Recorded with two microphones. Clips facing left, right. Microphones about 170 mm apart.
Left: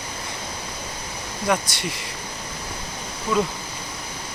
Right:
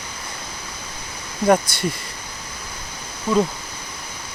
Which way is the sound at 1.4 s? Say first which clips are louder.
Right 7 dB; 45° right (ahead or behind).